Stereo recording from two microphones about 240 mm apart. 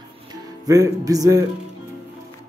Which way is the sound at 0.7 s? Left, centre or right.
Centre.